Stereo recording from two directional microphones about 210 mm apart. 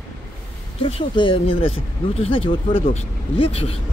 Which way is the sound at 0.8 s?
25° left (ahead or behind).